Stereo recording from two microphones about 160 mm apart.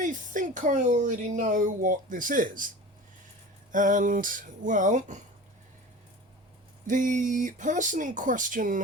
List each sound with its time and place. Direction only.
0.0 s speech: 50° right (ahead or behind)
6.8 s speech: 50° right (ahead or behind)